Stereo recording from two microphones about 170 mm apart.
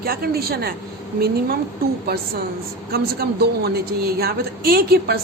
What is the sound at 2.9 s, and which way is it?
A woman's voice, 65° right (ahead or behind).